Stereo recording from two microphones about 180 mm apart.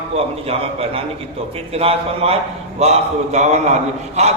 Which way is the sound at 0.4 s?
35° right (ahead or behind).